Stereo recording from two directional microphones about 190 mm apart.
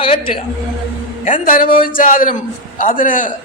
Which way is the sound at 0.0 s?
25° left (ahead or behind).